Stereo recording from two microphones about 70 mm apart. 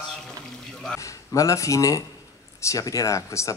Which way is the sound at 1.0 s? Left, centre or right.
Left.